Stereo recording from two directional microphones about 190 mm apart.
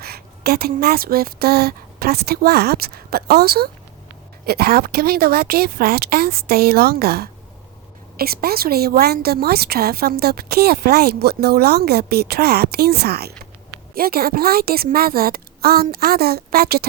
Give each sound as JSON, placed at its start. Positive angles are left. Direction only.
{"t": 0.0, "sound": "a woman's voice", "side_deg": -55}